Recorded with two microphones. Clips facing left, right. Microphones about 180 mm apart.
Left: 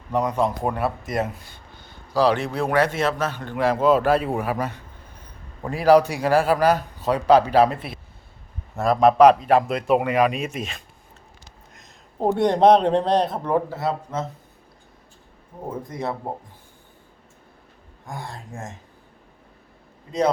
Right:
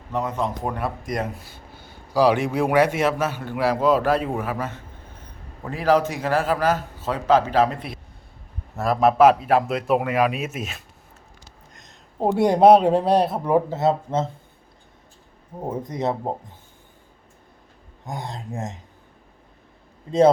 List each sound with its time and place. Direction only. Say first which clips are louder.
0.8 s speech: left 2 dB; 5° left (ahead or behind)
4.1 s a man's voice: left 2 dB; 35° left (ahead or behind)
5.7 s a man's voice: left 4 dB; 10° left (ahead or behind)
8.7 s a man's voice: left 2 dB; centre (ahead or behind)
13.7 s speech: right 5 dB; 25° right (ahead or behind)
15.6 s speech: right 3 dB; 20° right (ahead or behind)
18.0 s speech: right 3 dB; 20° right (ahead or behind)
20.1 s speech: right 6 dB; 25° right (ahead or behind)